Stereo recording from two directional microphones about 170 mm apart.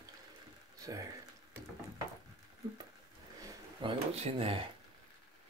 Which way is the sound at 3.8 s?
30° right (ahead or behind).